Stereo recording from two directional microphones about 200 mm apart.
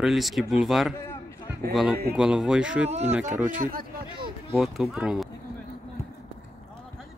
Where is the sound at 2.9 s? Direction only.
35° right (ahead or behind).